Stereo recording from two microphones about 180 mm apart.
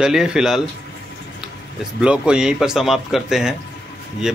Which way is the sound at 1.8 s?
5° right (ahead or behind).